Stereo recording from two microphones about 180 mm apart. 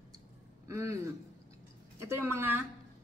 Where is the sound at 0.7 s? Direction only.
15° right (ahead or behind).